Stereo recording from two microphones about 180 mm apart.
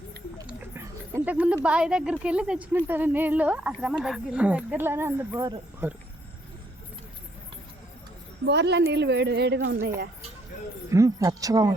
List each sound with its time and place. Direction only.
0.4 s a sound: 15° right (ahead or behind)
1.6 s speech: 5° right (ahead or behind)
8.4 s a woman's voice: 70° right (ahead or behind)
10.8 s speech: 15° right (ahead or behind)